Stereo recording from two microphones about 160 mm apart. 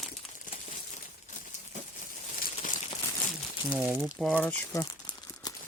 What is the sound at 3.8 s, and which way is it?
Speech, 5° right (ahead or behind).